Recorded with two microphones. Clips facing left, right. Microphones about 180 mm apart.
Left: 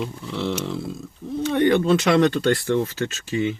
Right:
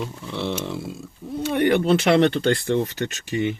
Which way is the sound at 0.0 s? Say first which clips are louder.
Left 1 dB; 5° right (ahead or behind).